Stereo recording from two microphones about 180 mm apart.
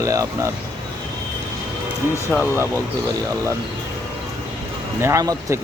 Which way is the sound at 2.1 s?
5° left (ahead or behind).